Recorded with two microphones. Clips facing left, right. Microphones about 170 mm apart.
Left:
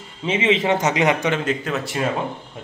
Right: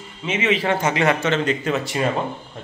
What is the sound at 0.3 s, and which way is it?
A man's voice, 25° left (ahead or behind).